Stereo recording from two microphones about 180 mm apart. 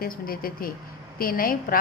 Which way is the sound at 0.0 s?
55° left (ahead or behind).